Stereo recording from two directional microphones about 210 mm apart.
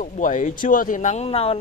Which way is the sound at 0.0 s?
35° left (ahead or behind).